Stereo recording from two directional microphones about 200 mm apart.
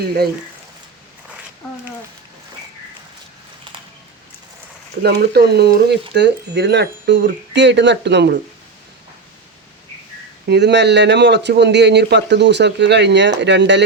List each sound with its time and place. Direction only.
5.0 s speech: 55° right (ahead or behind)
10.5 s speech: 60° right (ahead or behind)